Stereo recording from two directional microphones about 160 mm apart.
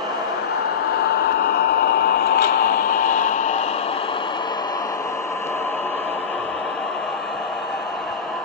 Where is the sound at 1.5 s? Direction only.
80° left; by 3.7 s 45° left (ahead or behind).